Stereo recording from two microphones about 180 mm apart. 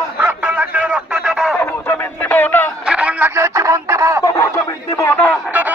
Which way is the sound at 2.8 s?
5° right (ahead or behind).